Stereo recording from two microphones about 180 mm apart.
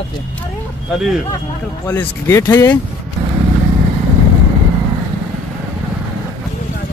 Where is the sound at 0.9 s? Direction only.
Centre (ahead or behind).